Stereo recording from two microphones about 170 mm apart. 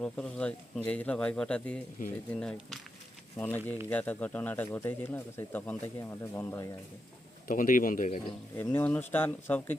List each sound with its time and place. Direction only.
0.0 s speech: 5° left (ahead or behind)
2.0 s speech: 55° left (ahead or behind)
2.3 s speech: 5° left (ahead or behind)
7.4 s speech: 50° left (ahead or behind)
8.5 s speech: 10° left (ahead or behind)